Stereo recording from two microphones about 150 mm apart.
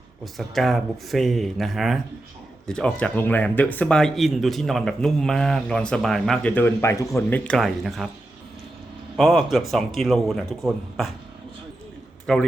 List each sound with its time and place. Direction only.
0.3 s speech: centre (ahead or behind)
9.1 s speech: centre (ahead or behind)
12.2 s a man's voice: 5° left (ahead or behind)